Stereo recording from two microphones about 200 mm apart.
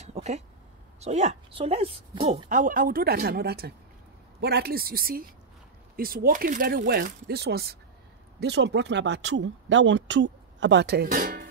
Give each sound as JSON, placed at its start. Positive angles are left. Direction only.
{"t": 0.0, "sound": "a sound", "side_deg": -35}
{"t": 0.9, "sound": "speech", "side_deg": -35}
{"t": 2.2, "sound": "speech", "side_deg": -40}